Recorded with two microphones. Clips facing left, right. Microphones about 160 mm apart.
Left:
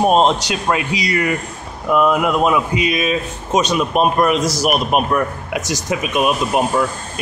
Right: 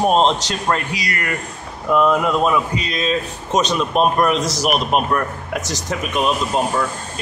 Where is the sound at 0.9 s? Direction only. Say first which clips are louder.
Left 6 dB; 20° left (ahead or behind).